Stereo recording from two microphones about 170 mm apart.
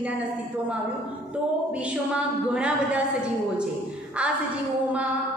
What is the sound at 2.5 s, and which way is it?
A woman's voice, 5° right (ahead or behind).